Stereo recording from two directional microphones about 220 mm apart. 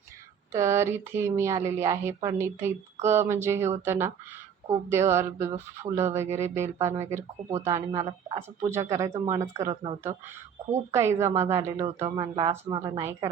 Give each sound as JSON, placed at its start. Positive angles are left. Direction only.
{"t": 0.5, "sound": "speech", "side_deg": -10}
{"t": 10.9, "sound": "speech", "side_deg": -10}
{"t": 11.9, "sound": "speech", "side_deg": -30}
{"t": 12.2, "sound": "speech", "side_deg": -20}